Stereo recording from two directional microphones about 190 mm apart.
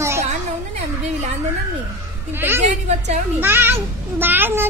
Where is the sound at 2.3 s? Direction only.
10° right (ahead or behind).